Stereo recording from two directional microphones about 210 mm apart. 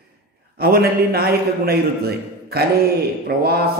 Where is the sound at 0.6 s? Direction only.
45° right (ahead or behind).